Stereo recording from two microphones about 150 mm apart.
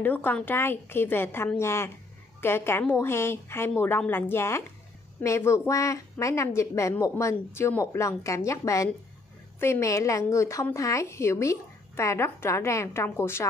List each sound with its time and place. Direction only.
0.0 s a woman's voice: 10° left (ahead or behind)